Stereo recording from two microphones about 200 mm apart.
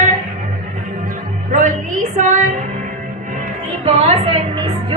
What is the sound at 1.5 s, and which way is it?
Speech, 40° right (ahead or behind).